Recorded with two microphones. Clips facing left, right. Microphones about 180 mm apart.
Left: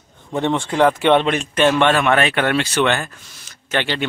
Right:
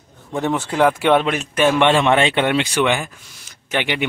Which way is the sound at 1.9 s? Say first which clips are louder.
Right 1 dB; 25° right (ahead or behind).